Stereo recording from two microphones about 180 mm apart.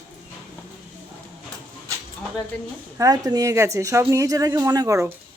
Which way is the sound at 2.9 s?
20° right (ahead or behind).